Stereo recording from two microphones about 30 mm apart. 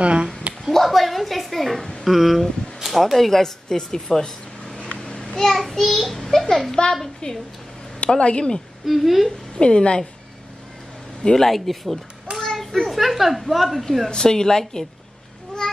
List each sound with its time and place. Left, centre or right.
0.0 s speech: right
0.7 s a sound: centre
2.0 s speech: centre
4.2 s a sound: left
5.4 s a child's voice: centre
6.8 s speech: left
8.8 s speech: centre
9.6 s speech: left
11.3 s speech: centre
12.4 s children playing: centre
12.8 s speech: centre
14.1 s a child's voice: left
15.6 s a sound: left